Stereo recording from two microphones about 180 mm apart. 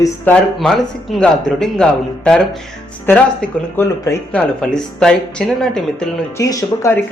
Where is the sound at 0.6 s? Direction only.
Centre (ahead or behind).